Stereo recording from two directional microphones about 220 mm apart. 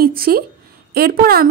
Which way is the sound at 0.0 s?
40° right (ahead or behind).